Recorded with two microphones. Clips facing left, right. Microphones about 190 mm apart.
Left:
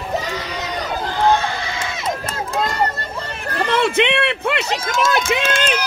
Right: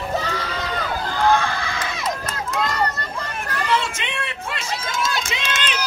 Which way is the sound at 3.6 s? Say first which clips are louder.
Left 8 dB; 60° left (ahead or behind).